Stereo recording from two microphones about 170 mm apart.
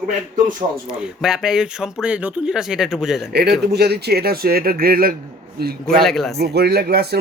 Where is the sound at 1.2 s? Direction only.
5° right (ahead or behind).